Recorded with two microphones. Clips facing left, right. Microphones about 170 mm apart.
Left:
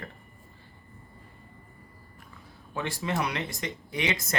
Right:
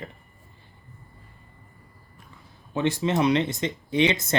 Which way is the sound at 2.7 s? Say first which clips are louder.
Right 7 dB; 20° right (ahead or behind).